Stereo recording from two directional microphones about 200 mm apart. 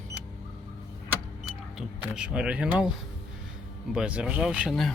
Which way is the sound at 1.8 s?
5° right (ahead or behind).